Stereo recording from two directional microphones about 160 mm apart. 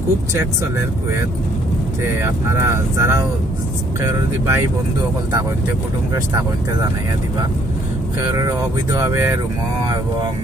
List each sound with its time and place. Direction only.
0.3 s speech: 20° right (ahead or behind)
2.0 s speech: 15° right (ahead or behind)
8.2 s speech: 20° right (ahead or behind)